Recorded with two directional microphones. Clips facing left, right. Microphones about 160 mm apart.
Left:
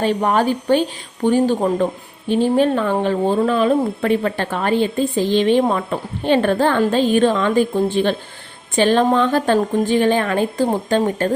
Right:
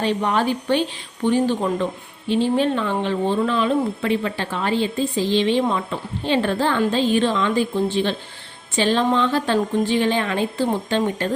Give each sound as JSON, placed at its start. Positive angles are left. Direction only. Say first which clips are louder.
{"t": 0.0, "sound": "speech", "louder": "left 3 dB", "side_deg": 45}